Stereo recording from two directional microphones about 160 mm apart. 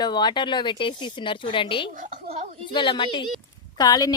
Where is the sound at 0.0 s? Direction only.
25° left (ahead or behind).